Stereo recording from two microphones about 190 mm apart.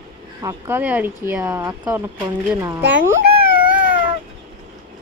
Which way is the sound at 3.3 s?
30° right (ahead or behind).